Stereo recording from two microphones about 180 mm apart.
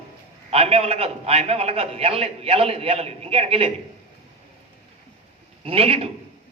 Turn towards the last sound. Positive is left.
turn(degrees=-35)  # may be behind; listen again after turning